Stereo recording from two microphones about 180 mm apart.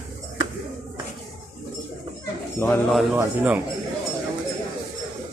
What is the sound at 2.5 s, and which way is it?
Speech, 15° left (ahead or behind).